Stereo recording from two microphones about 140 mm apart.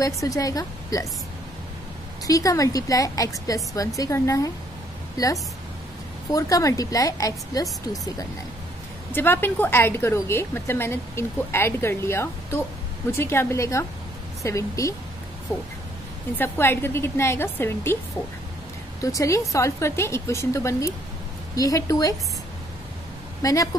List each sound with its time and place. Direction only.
0.0 s a woman's voice: 25° left (ahead or behind)
2.2 s a woman's voice: 25° left (ahead or behind)
9.1 s a woman's voice: 15° left (ahead or behind)
16.3 s a woman's voice: 15° left (ahead or behind)
18.9 s a woman's voice: 25° left (ahead or behind)
23.4 s a woman's voice: 25° left (ahead or behind)